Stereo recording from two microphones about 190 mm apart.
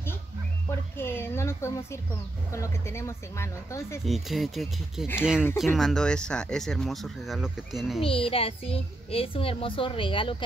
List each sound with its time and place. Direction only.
0.7 s a sound: 10° left (ahead or behind)
2.5 s speech: 15° left (ahead or behind)
4.0 s speech: centre (ahead or behind)
8.0 s a child's voice: 30° left (ahead or behind)